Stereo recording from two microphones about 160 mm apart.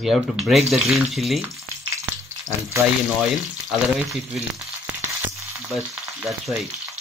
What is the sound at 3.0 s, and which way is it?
Speech, centre (ahead or behind).